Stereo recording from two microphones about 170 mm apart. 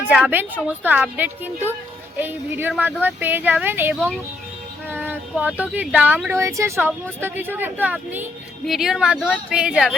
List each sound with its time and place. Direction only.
0.1 s speech: 10° right (ahead or behind)
5.4 s speech: 10° right (ahead or behind)